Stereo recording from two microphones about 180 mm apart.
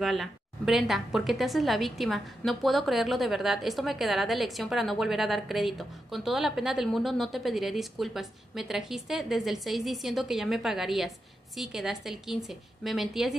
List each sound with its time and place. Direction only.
0.0 s a woman's voice: centre (ahead or behind)